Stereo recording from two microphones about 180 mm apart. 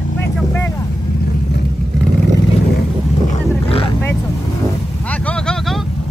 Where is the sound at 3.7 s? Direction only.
30° left (ahead or behind).